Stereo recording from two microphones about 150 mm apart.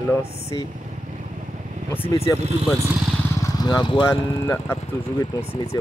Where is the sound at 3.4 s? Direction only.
25° left (ahead or behind).